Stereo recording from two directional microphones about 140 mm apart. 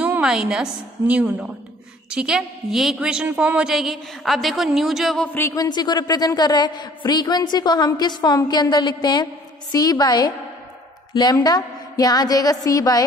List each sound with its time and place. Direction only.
0.0 s a woman's voice: 5° right (ahead or behind)
5.4 s a woman's voice: 25° left (ahead or behind)
11.4 s a woman's voice: 25° left (ahead or behind)